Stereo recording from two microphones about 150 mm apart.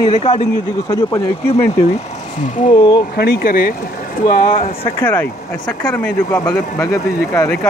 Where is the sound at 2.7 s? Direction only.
30° left (ahead or behind).